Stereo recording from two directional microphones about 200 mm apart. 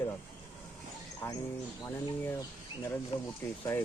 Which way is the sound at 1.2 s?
10° left (ahead or behind).